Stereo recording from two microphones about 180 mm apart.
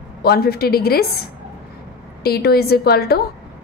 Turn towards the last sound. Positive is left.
turn(degrees=60)  # may be behind; listen again after turning